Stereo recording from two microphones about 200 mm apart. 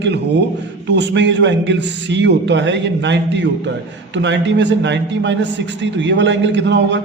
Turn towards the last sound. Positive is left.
turn(degrees=-60)  # may be behind; listen again after turning